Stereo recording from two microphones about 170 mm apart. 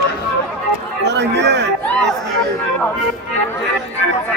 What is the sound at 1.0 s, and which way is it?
Speech, 90° right.